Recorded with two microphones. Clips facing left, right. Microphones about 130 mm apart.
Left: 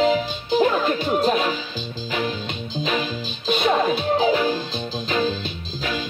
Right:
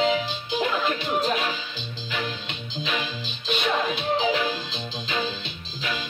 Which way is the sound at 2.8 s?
40° left (ahead or behind).